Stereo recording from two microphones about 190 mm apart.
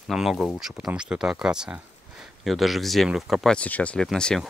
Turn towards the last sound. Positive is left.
turn(degrees=5)  # may be behind; listen again after turning